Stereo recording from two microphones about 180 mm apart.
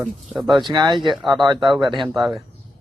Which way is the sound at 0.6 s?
25° right (ahead or behind).